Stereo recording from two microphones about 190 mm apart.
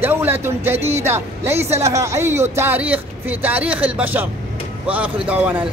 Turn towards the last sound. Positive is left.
turn(degrees=-5)  # may be behind; listen again after turning